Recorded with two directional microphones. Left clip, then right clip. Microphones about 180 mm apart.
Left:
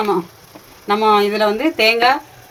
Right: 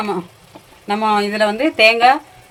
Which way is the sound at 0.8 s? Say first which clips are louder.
Left 3 dB; 20° right (ahead or behind).